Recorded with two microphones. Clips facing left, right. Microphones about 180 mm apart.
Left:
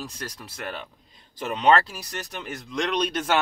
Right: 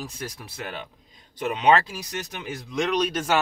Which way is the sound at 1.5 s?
15° right (ahead or behind).